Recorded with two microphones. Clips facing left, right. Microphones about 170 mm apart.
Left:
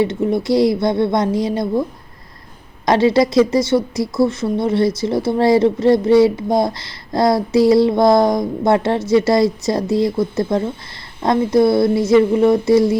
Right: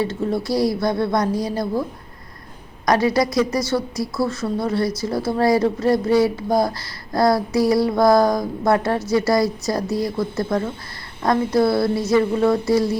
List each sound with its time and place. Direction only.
0.0 s speech: 20° left (ahead or behind)
2.8 s speech: 25° left (ahead or behind)